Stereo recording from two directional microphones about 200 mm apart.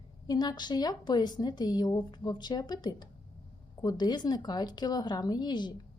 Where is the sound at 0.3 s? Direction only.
20° left (ahead or behind).